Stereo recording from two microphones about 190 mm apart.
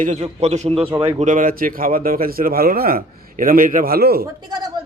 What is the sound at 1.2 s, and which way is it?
Speech, 45° right (ahead or behind).